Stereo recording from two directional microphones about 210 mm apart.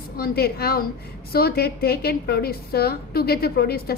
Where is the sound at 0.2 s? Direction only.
45° left (ahead or behind).